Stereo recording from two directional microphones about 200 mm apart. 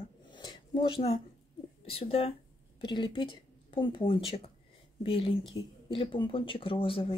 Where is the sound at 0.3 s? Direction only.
25° left (ahead or behind).